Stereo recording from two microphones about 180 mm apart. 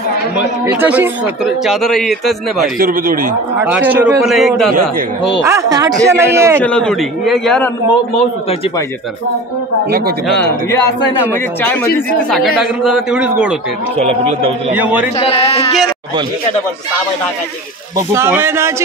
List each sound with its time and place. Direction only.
0.7 s a man's voice: 10° right (ahead or behind)
2.6 s speech: 50° right (ahead or behind)
3.5 s a man's voice: 10° right (ahead or behind)
5.4 s a man's voice: 15° right (ahead or behind)
6.6 s a man's voice: 5° left (ahead or behind)
8.1 s speech: 35° left (ahead or behind)
9.8 s speech: 60° right (ahead or behind)
10.4 s speech: 15° left (ahead or behind)
11.6 s speech: 10° left (ahead or behind)
12.8 s a man's voice: 5° right (ahead or behind)
13.9 s a man's voice: 35° right (ahead or behind)
14.7 s a man's voice: 10° right (ahead or behind)
15.1 s speech: 35° left (ahead or behind)
18.1 s a man's voice: 15° right (ahead or behind)